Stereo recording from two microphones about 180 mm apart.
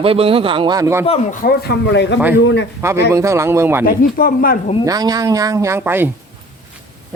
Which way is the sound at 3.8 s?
55° left (ahead or behind).